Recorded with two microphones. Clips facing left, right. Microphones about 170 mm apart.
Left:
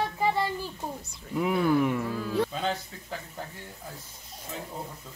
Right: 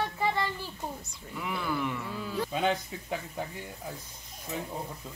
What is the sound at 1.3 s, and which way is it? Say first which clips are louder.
Speech: left 9 dB; 45° left (ahead or behind).